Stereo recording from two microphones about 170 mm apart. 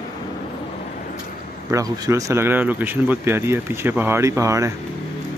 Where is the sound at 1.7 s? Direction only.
20° right (ahead or behind).